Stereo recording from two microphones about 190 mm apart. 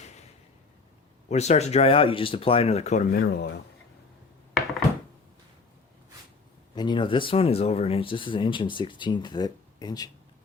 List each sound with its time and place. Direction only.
0.0 s a sound: 35° left (ahead or behind)
1.3 s speech: 35° left (ahead or behind); by 3.6 s 55° left (ahead or behind)
6.7 s speech: 25° left (ahead or behind)